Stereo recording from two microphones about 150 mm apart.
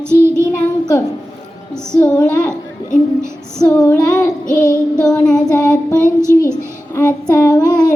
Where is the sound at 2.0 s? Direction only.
15° left (ahead or behind).